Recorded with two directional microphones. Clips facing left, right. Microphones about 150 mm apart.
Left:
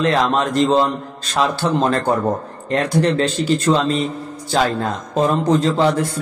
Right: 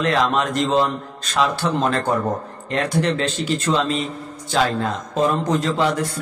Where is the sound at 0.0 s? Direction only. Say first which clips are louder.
Left 2 dB; 30° left (ahead or behind).